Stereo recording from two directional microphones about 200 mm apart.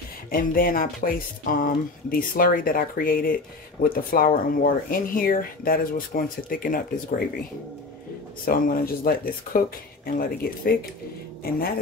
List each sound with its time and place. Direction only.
0.3 s speech: 45° left (ahead or behind)
8.5 s speech: 45° left (ahead or behind)